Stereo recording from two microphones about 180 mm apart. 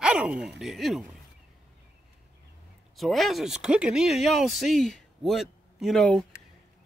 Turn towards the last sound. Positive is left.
turn(degrees=5)  # may be behind; listen again after turning